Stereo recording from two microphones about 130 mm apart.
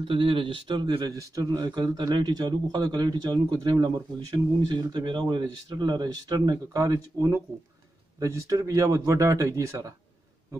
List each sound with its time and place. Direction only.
0.0 s speech: 40° right (ahead or behind); by 9.9 s 25° right (ahead or behind)